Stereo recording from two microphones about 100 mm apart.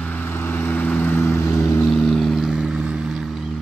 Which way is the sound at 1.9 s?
5° left (ahead or behind).